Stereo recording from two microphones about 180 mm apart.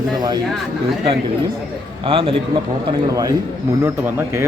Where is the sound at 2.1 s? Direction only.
30° right (ahead or behind).